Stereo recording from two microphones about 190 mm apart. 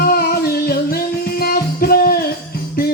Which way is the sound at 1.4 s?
50° left (ahead or behind).